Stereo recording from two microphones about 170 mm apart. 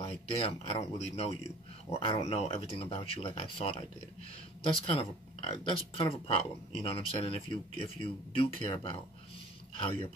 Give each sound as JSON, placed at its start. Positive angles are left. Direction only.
{"t": 0.0, "sound": "speech", "side_deg": 35}